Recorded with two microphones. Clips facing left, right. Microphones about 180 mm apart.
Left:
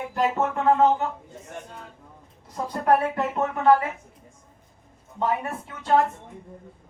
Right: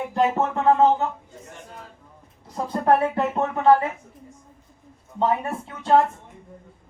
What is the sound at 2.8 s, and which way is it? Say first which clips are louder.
Speech: right 2 dB; 30° right (ahead or behind).